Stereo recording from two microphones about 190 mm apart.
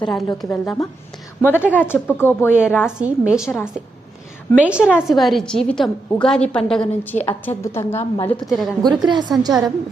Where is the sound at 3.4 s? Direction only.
10° left (ahead or behind).